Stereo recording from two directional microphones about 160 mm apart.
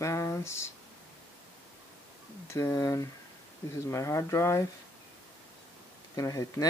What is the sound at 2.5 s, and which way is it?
Speech, 20° left (ahead or behind).